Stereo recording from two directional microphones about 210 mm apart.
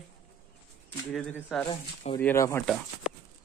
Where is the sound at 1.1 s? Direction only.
5° left (ahead or behind).